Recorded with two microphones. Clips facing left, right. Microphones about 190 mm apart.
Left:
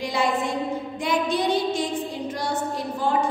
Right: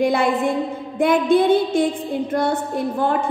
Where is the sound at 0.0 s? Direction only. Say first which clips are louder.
Right 6 dB; 55° right (ahead or behind).